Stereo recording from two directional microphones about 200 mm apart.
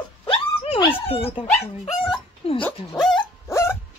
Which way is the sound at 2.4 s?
30° left (ahead or behind).